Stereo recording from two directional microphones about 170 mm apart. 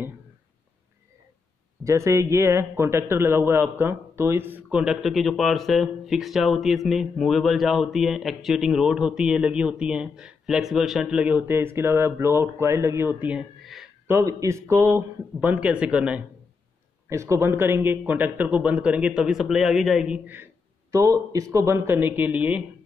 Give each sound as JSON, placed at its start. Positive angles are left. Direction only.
{"t": 1.9, "sound": "a man's voice", "side_deg": -15}
{"t": 14.0, "sound": "speech", "side_deg": -15}
{"t": 17.1, "sound": "speech", "side_deg": -15}
{"t": 20.9, "sound": "speech", "side_deg": -20}